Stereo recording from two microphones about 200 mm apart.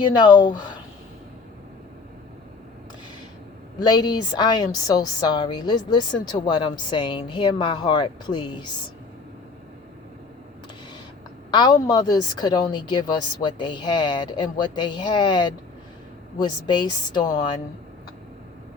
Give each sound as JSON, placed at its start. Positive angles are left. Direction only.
{"t": 0.0, "sound": "a woman's voice", "side_deg": 20}
{"t": 3.8, "sound": "a woman's voice", "side_deg": 20}
{"t": 11.5, "sound": "a woman's voice", "side_deg": 20}